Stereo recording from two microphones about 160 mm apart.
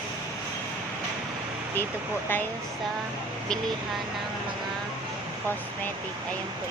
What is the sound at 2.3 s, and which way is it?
Speech, 15° left (ahead or behind).